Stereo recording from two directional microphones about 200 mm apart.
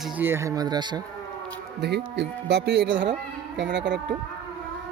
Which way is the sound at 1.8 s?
55° right (ahead or behind).